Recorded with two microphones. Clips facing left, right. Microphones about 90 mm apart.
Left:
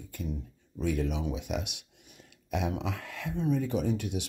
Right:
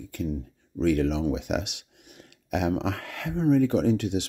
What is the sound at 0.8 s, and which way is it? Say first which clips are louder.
Speech: right 7 dB; 70° right (ahead or behind).